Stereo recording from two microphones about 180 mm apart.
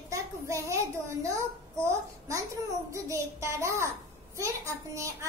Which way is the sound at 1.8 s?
15° right (ahead or behind).